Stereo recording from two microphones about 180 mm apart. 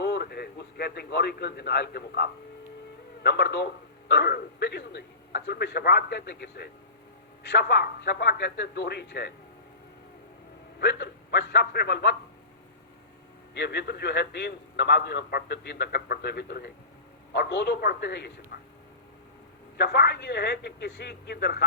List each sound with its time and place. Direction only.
0.0 s a man's voice: 65° left (ahead or behind)
10.8 s a man's voice: 65° left (ahead or behind)
13.5 s a man's voice: 70° left (ahead or behind)
17.3 s a man's voice: 70° left (ahead or behind)
18.5 s a sound: 60° left (ahead or behind)
19.7 s a man's voice: 65° left (ahead or behind)